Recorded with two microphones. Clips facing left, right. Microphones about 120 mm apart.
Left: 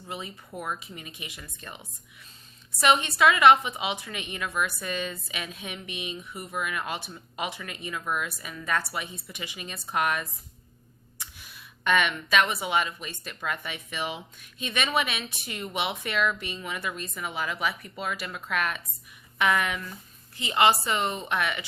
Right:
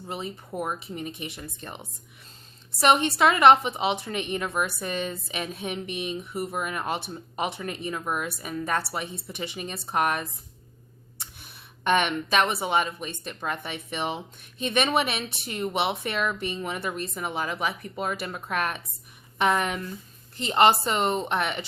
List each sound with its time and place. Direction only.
0.1 s speech: 40° right (ahead or behind)
2.8 s a woman's voice: 45° right (ahead or behind)
11.9 s a woman's voice: 40° right (ahead or behind)